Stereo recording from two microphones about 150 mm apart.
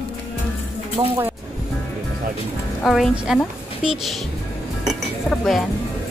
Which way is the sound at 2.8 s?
Centre (ahead or behind).